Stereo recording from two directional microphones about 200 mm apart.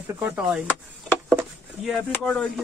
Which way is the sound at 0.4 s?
5° right (ahead or behind).